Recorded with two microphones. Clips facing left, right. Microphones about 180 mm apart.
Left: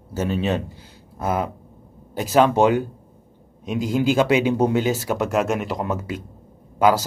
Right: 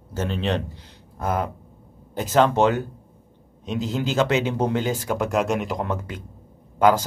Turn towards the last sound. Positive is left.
turn(degrees=10)  # may be behind; listen again after turning